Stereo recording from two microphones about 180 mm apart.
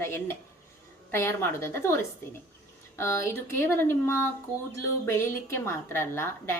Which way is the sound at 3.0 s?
15° left (ahead or behind).